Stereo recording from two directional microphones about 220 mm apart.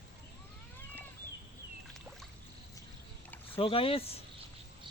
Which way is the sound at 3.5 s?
25° left (ahead or behind).